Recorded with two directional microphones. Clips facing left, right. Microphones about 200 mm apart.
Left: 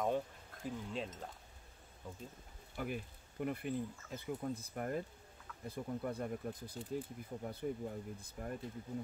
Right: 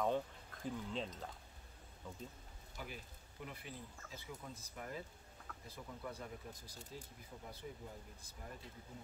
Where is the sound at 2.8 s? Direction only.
55° left (ahead or behind).